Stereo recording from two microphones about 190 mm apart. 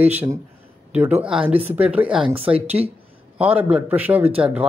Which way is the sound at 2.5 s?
30° right (ahead or behind).